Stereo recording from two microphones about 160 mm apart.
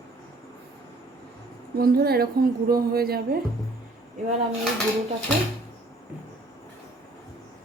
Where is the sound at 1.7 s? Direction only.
70° right (ahead or behind).